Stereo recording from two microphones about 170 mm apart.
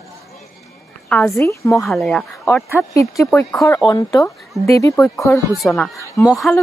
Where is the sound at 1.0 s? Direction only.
5° left (ahead or behind).